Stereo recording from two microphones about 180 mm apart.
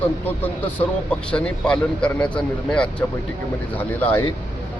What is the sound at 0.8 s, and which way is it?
A man's voice, 5° left (ahead or behind).